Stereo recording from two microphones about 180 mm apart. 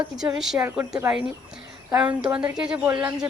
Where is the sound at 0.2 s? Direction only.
5° right (ahead or behind).